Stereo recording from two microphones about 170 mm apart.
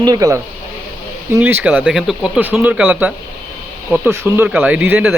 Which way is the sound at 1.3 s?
10° right (ahead or behind).